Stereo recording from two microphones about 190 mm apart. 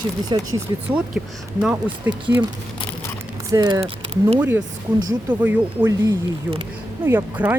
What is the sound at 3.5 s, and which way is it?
Speech, 20° right (ahead or behind).